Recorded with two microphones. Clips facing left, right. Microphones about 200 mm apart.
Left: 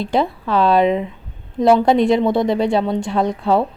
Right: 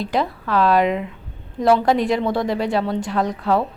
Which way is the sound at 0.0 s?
25° left (ahead or behind).